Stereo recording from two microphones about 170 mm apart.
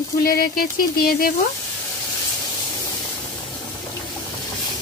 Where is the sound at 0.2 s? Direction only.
60° left (ahead or behind).